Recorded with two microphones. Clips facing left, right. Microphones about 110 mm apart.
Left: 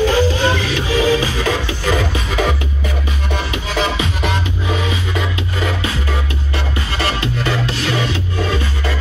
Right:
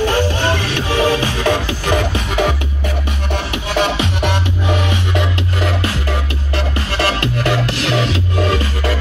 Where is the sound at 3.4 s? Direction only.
60° right (ahead or behind).